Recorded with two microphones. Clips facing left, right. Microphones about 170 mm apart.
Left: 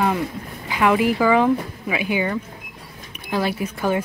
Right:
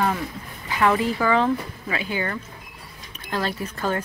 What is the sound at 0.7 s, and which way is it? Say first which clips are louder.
Speech: left 3 dB; 10° left (ahead or behind).